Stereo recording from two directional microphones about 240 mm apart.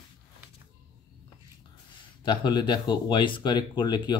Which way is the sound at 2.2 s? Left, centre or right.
Centre.